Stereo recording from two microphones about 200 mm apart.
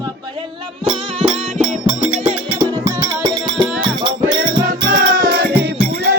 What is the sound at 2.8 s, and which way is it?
Music, 20° right (ahead or behind).